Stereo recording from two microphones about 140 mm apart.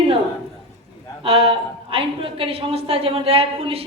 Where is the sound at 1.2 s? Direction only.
40° right (ahead or behind).